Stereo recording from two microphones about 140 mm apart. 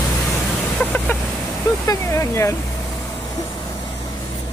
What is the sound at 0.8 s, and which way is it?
Vehicle, 10° left (ahead or behind).